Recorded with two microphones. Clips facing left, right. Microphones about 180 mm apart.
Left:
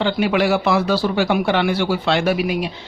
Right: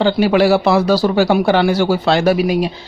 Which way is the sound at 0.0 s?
35° right (ahead or behind).